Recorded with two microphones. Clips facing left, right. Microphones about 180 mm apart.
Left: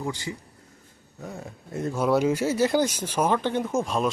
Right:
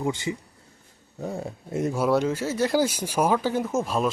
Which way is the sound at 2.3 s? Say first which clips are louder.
Left 3 dB; 15° left (ahead or behind).